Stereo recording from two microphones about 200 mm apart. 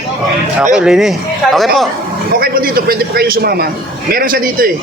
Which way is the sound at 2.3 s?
50° right (ahead or behind).